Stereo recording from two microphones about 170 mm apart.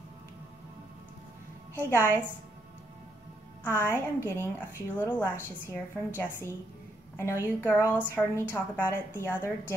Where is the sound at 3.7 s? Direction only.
15° left (ahead or behind).